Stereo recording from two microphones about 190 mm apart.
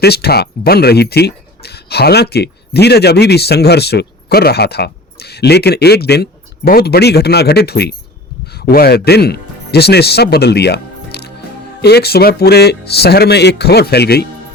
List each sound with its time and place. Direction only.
0.0 s speech: 55° left (ahead or behind)